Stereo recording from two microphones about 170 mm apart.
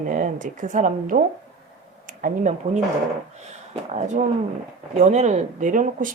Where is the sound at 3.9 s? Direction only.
45° right (ahead or behind).